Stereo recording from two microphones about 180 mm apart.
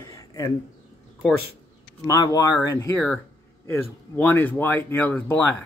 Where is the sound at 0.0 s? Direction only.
20° left (ahead or behind).